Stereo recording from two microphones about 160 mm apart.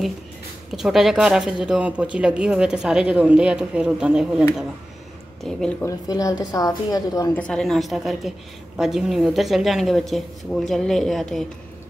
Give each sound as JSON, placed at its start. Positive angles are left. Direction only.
{"t": 0.7, "sound": "speech", "side_deg": 0}
{"t": 5.8, "sound": "a woman's voice", "side_deg": 20}
{"t": 7.3, "sound": "speech", "side_deg": 5}